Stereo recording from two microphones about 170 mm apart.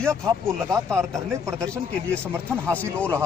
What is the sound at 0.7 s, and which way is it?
Speech, 15° right (ahead or behind).